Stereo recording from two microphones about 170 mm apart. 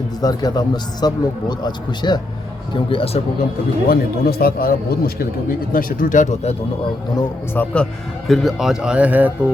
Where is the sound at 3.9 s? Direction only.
60° left (ahead or behind).